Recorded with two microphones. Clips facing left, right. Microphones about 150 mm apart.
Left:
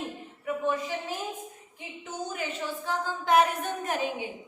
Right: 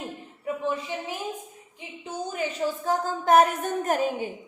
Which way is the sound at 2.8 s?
45° right (ahead or behind).